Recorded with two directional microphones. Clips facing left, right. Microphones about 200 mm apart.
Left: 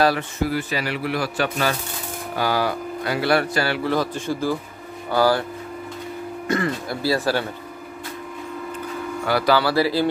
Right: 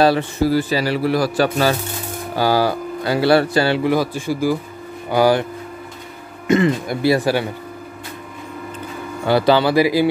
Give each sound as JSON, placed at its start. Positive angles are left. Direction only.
{"t": 0.0, "sound": "a man's voice", "side_deg": -30}
{"t": 3.8, "sound": "a man's voice", "side_deg": -10}
{"t": 9.2, "sound": "speech", "side_deg": -25}